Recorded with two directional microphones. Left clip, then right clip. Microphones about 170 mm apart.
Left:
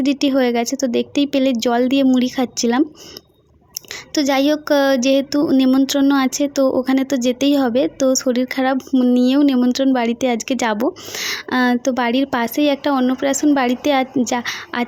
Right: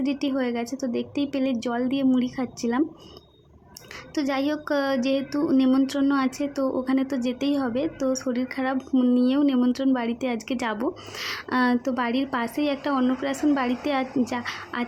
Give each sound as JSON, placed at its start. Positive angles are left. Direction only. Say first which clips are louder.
{"t": 0.0, "sound": "speech", "louder": "left 10 dB", "side_deg": 40}
{"t": 4.1, "sound": "speech", "louder": "left 9 dB", "side_deg": 35}